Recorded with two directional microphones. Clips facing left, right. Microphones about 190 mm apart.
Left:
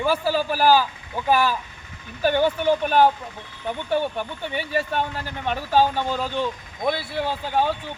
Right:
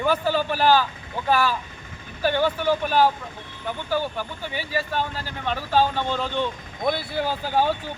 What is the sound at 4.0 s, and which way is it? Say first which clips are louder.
Speech: left 2 dB; 25° left (ahead or behind).